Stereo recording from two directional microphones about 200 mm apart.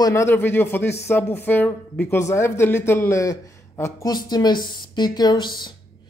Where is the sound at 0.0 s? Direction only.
15° left (ahead or behind).